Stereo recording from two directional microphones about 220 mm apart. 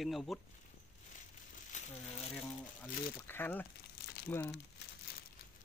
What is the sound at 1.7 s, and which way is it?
Crumpling, 35° left (ahead or behind).